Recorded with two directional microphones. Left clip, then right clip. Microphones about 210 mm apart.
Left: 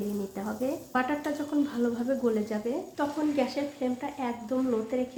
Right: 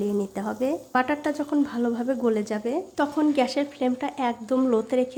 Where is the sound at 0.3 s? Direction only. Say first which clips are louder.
Right 5 dB; 35° right (ahead or behind).